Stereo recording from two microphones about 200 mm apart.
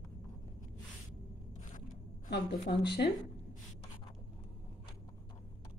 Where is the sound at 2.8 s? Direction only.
60° left (ahead or behind).